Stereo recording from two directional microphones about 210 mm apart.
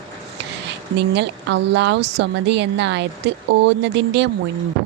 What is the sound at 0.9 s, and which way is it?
A woman's voice, 55° right (ahead or behind).